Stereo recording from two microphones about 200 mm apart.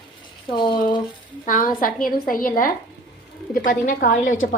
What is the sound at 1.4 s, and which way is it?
A woman's voice, 40° left (ahead or behind).